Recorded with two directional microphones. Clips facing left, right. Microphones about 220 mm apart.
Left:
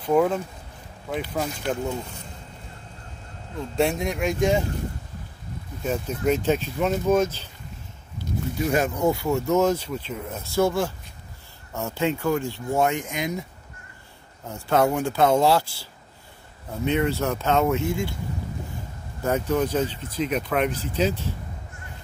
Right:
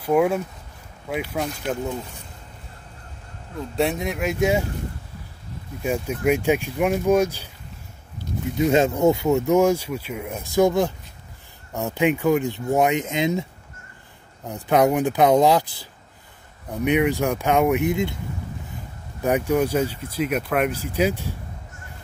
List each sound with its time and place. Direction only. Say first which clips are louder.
0.0 s speech: right 1 dB; 10° right (ahead or behind)
3.7 s speech: even; centre (ahead or behind)
5.9 s speech: right 2 dB; 10° right (ahead or behind)
8.5 s speech: right 5 dB; 25° right (ahead or behind)
14.5 s speech: right 3 dB; 15° right (ahead or behind)
19.2 s speech: right 3 dB; 15° right (ahead or behind)